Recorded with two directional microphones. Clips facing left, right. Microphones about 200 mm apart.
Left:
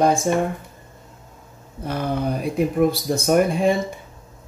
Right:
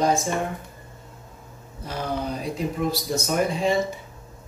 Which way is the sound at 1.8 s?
55° left (ahead or behind).